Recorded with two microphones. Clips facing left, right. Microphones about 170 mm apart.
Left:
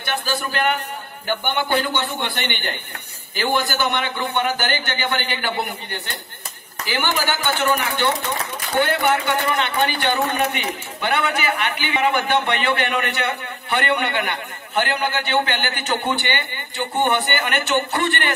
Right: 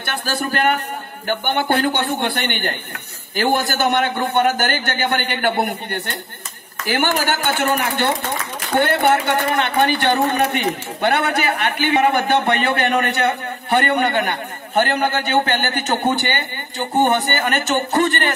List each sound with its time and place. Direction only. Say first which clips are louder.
0.0 s a man's voice: right 1 dB; 50° right (ahead or behind)